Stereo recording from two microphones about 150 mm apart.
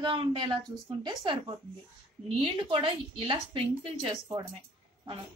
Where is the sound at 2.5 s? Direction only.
35° right (ahead or behind).